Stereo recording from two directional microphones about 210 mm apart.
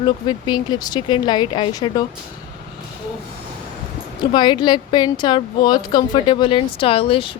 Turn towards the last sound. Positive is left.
turn(degrees=25)  # may be behind; listen again after turning